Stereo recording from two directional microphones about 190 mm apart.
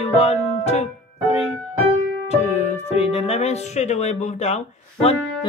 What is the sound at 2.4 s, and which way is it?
Music, 35° left (ahead or behind).